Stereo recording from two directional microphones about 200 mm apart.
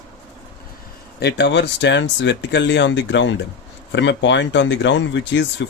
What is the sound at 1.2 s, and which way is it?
Speech, 60° left (ahead or behind).